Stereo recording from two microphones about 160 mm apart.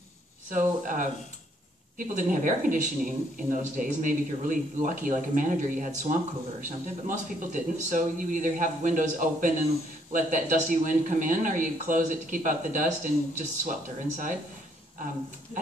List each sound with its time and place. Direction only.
0.5 s speech: 55° right (ahead or behind)